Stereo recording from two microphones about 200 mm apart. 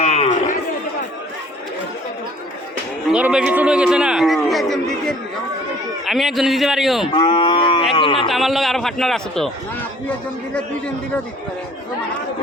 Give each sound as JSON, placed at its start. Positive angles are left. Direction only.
{"t": 0.0, "sound": "chatter", "side_deg": 35}
{"t": 3.1, "sound": "a man's voice", "side_deg": -5}
{"t": 7.1, "sound": "cattle", "side_deg": 25}
{"t": 7.9, "sound": "speech", "side_deg": 25}
{"t": 8.3, "sound": "a man's voice", "side_deg": 0}